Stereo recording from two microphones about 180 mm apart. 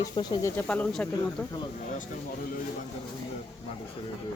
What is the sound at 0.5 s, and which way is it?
Speech, 5° left (ahead or behind).